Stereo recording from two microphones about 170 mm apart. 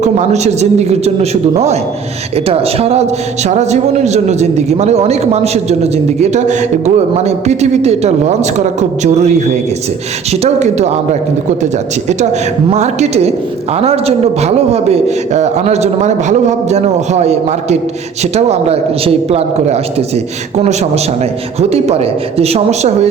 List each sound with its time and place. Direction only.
0.0 s a woman's voice: 45° right (ahead or behind)